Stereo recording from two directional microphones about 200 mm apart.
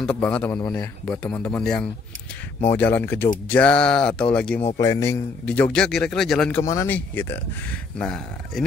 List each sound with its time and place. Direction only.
0.0 s speech: 5° left (ahead or behind)
6.6 s speech: 15° left (ahead or behind)